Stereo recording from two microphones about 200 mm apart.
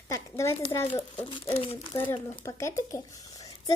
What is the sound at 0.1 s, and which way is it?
Speech, 15° left (ahead or behind).